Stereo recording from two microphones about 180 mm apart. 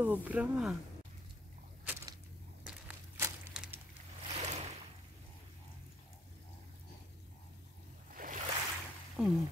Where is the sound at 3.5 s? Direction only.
5° right (ahead or behind).